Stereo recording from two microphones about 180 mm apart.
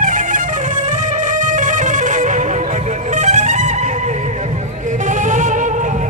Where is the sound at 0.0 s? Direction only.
45° right (ahead or behind).